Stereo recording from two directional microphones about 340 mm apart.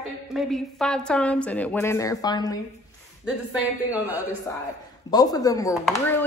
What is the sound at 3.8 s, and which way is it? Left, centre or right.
Speech, centre.